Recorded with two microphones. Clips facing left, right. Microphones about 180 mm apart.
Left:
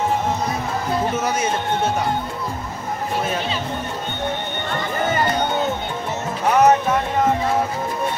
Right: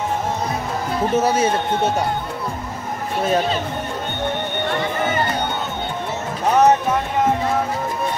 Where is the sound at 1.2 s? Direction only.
30° right (ahead or behind).